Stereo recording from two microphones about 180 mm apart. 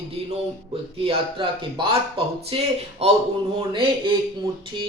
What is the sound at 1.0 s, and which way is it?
Speech, 30° right (ahead or behind).